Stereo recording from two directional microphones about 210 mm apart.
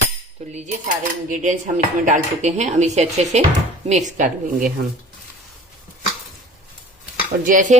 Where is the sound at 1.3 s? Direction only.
35° right (ahead or behind).